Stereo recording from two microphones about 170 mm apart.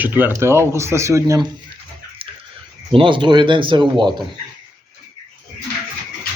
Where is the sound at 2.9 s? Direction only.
30° right (ahead or behind).